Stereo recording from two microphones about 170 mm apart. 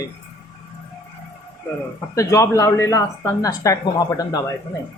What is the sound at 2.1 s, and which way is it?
Speech, 20° left (ahead or behind).